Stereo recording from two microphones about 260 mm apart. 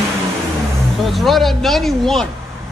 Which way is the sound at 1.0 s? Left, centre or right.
Centre.